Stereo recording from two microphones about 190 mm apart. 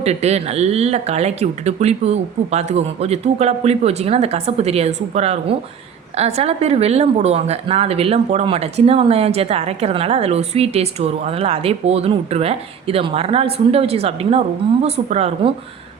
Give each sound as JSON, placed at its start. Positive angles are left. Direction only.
{"t": 0.0, "sound": "speech", "side_deg": -35}